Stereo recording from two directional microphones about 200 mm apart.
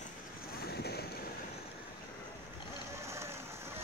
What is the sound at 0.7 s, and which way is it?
Boat, 55° left (ahead or behind).